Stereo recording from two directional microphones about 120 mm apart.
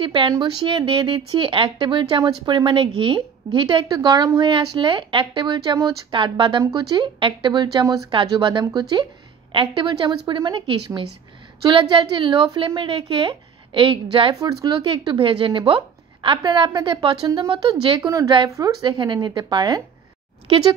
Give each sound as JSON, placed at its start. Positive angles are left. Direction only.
{"t": 0.0, "sound": "speech", "side_deg": -45}
{"t": 4.4, "sound": "speech", "side_deg": -40}
{"t": 6.6, "sound": "speech", "side_deg": -30}
{"t": 8.3, "sound": "speech", "side_deg": -40}
{"t": 14.4, "sound": "speech", "side_deg": -30}
{"t": 14.9, "sound": "speech", "side_deg": -45}
{"t": 20.4, "sound": "speech", "side_deg": -50}